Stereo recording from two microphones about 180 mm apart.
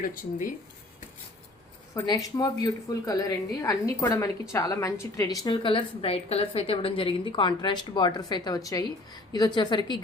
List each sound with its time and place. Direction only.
0.0 s speech: 50° left (ahead or behind)
2.0 s a woman's voice: 20° left (ahead or behind)